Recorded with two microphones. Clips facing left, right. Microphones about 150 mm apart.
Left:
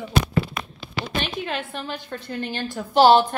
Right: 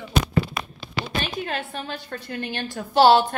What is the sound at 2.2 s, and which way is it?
Speech, 20° left (ahead or behind).